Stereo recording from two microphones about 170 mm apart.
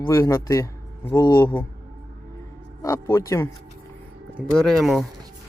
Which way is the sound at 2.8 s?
15° left (ahead or behind).